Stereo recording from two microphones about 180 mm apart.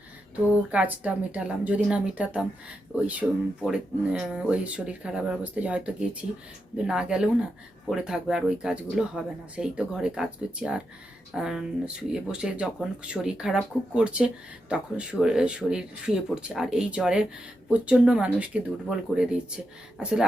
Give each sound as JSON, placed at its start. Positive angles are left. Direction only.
{"t": 0.7, "sound": "speech", "side_deg": -5}